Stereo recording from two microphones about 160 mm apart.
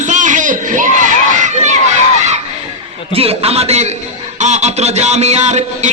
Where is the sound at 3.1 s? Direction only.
40° right (ahead or behind).